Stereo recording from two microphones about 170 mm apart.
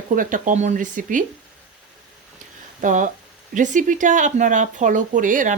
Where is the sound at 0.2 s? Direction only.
50° right (ahead or behind).